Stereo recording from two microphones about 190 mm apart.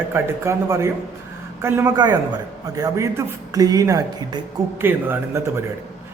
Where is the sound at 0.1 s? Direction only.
15° right (ahead or behind).